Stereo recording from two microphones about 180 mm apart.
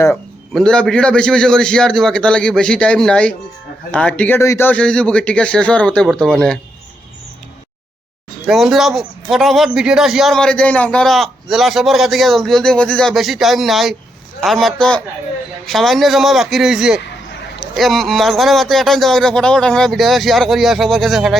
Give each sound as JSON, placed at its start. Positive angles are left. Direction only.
{"t": 0.5, "sound": "a man's voice", "side_deg": 5}
{"t": 8.4, "sound": "a man's voice", "side_deg": 0}